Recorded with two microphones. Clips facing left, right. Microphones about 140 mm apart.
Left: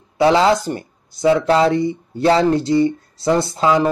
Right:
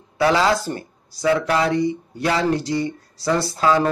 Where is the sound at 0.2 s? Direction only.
25° left (ahead or behind).